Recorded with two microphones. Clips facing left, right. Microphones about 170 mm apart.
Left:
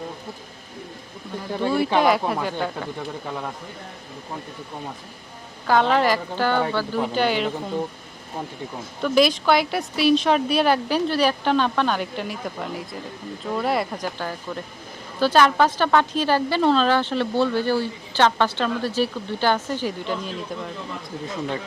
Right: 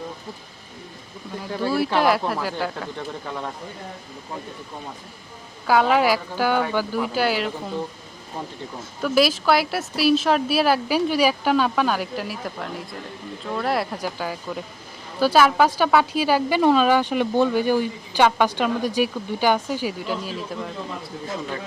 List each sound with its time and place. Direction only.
1.7 s speech: 5° right (ahead or behind)
5.6 s speech: 10° right (ahead or behind)
9.0 s speech: 5° right (ahead or behind)